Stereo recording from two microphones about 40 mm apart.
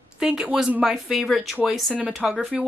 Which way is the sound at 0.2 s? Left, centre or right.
Centre.